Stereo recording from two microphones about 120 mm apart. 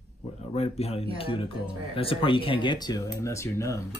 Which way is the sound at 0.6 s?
60° left (ahead or behind).